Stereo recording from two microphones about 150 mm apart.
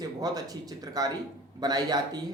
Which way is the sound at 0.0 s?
25° right (ahead or behind).